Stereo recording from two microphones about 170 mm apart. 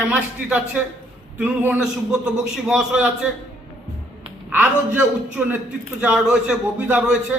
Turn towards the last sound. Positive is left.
turn(degrees=-5)  # may be behind; listen again after turning